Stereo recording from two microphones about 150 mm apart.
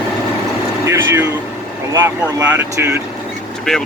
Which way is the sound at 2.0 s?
15° right (ahead or behind).